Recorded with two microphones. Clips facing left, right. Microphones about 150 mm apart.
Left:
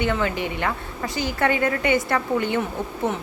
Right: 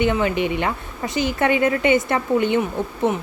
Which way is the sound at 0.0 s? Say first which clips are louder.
Right 4 dB; 20° right (ahead or behind).